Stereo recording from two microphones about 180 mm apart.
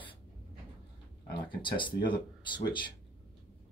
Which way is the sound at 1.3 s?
25° left (ahead or behind).